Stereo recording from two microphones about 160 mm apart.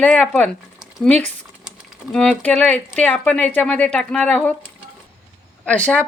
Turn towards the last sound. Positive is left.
turn(degrees=10)  # may be behind; listen again after turning